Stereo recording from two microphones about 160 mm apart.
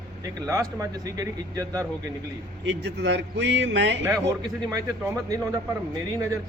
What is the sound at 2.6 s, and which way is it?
A man's voice, 90° right.